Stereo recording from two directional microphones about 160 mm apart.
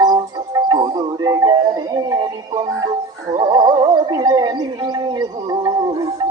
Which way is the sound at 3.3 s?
25° right (ahead or behind).